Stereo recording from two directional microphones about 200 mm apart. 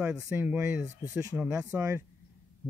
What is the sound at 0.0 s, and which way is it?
Speech, 15° right (ahead or behind).